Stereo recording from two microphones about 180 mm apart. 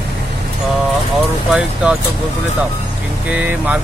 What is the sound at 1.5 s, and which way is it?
Speech, 5° right (ahead or behind).